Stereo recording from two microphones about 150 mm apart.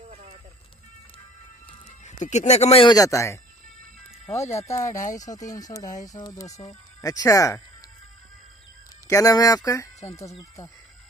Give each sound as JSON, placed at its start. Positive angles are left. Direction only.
{"t": 0.1, "sound": "vehicle", "side_deg": -45}
{"t": 1.9, "sound": "speech", "side_deg": 50}
{"t": 2.9, "sound": "speech", "side_deg": 20}
{"t": 4.3, "sound": "speech", "side_deg": 45}
{"t": 4.8, "sound": "speech", "side_deg": 20}
{"t": 9.0, "sound": "speech", "side_deg": 20}